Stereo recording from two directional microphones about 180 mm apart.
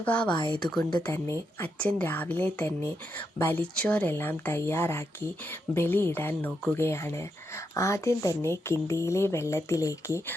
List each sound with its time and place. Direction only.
0.0 s speech: 10° left (ahead or behind)